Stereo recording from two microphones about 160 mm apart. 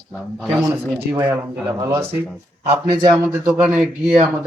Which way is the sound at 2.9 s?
25° right (ahead or behind).